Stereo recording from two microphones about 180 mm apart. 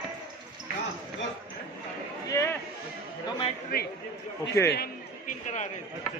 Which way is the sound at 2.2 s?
15° left (ahead or behind).